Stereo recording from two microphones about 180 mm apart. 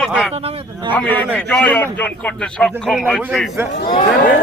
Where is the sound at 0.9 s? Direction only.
10° left (ahead or behind).